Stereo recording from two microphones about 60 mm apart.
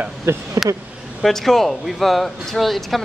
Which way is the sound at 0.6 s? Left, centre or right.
Right.